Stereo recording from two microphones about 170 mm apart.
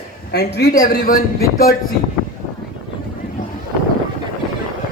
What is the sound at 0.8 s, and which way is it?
Speech, 55° left (ahead or behind).